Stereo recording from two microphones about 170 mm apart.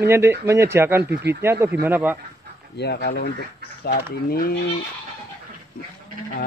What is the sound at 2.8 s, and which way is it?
Speech, 70° left (ahead or behind).